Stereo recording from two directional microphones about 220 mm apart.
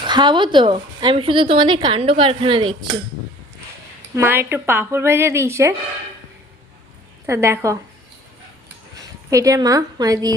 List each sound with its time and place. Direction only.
0.0 s a woman's voice: 20° right (ahead or behind)
4.1 s speech: 10° right (ahead or behind)
7.3 s speech: 15° right (ahead or behind)
9.3 s speech: 15° right (ahead or behind)